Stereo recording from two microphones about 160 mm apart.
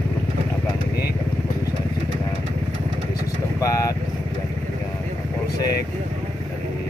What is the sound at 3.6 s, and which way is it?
Vehicle, 20° left (ahead or behind).